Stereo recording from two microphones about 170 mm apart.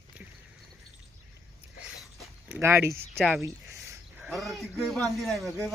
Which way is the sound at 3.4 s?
15° right (ahead or behind).